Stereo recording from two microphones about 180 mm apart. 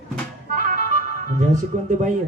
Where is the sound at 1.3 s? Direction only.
45° right (ahead or behind).